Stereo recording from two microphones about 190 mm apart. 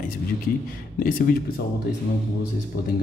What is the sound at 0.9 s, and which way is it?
Speech, 50° left (ahead or behind).